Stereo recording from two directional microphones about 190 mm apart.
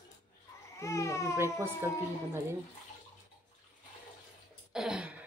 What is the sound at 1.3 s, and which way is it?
Speech, 15° right (ahead or behind).